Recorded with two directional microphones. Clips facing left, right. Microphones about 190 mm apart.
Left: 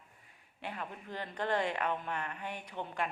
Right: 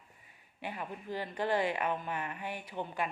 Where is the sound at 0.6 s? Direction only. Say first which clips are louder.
Right 2 dB; 10° right (ahead or behind).